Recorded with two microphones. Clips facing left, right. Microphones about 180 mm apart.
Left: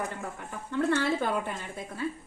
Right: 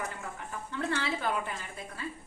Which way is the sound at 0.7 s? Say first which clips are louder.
Left 7 dB; 55° left (ahead or behind).